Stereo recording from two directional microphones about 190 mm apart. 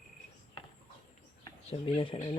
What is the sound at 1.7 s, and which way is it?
Speech, 30° left (ahead or behind).